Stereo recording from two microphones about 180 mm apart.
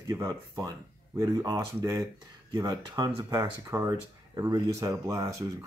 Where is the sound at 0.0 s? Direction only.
20° right (ahead or behind).